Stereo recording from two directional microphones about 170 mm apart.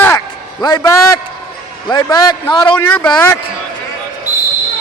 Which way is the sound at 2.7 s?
10° left (ahead or behind).